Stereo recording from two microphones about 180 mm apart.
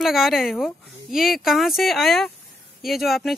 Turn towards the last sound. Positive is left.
turn(degrees=0)  # may be behind; listen again after turning